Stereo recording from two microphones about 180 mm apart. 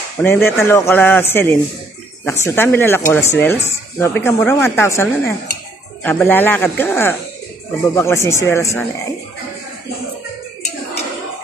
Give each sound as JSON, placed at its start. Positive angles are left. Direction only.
{"t": 0.2, "sound": "speech", "side_deg": 15}